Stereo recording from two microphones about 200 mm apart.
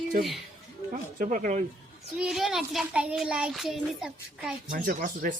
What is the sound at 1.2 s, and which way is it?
Speech, 40° right (ahead or behind).